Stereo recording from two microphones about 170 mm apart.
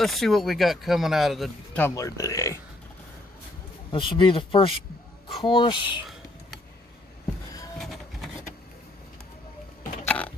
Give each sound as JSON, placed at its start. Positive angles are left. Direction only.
{"t": 0.0, "sound": "speech", "side_deg": 0}
{"t": 1.8, "sound": "speech", "side_deg": 20}
{"t": 3.9, "sound": "speech", "side_deg": 30}
{"t": 10.1, "sound": "a sound", "side_deg": 10}